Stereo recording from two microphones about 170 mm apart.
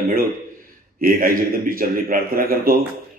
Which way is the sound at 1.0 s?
55° right (ahead or behind).